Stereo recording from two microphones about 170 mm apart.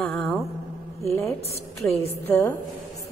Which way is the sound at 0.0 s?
5° left (ahead or behind).